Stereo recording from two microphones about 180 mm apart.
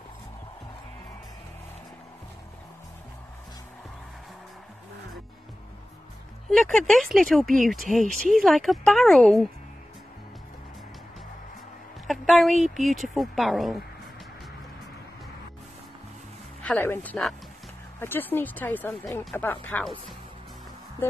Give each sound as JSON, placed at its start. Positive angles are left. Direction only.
{"t": 6.5, "sound": "speech", "side_deg": 5}
{"t": 8.0, "sound": "speech", "side_deg": -45}
{"t": 8.3, "sound": "speech", "side_deg": 0}
{"t": 12.1, "sound": "a sound", "side_deg": 0}
{"t": 12.6, "sound": "speech", "side_deg": 0}
{"t": 16.6, "sound": "speech", "side_deg": 10}